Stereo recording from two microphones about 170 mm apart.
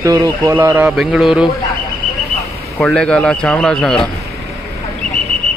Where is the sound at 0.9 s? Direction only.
Centre (ahead or behind).